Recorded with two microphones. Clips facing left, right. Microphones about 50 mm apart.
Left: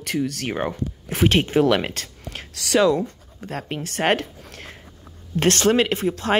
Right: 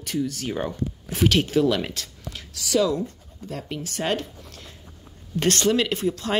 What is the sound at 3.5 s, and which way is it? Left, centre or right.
Speech, left.